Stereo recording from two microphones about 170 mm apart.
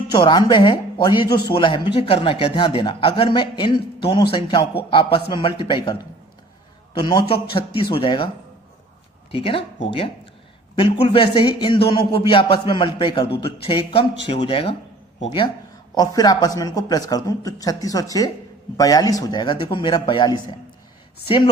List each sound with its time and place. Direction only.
0.1 s speech: 25° left (ahead or behind)
9.3 s speech: 35° left (ahead or behind)
16.0 s speech: 20° left (ahead or behind)